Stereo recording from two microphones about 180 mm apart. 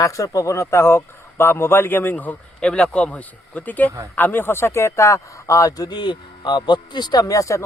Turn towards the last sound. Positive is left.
turn(degrees=15)  # may be behind; listen again after turning